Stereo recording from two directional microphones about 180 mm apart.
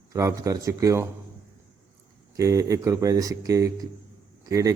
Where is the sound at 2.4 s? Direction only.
15° right (ahead or behind).